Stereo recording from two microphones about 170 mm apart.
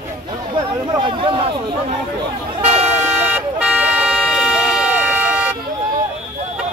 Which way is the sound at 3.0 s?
10° right (ahead or behind).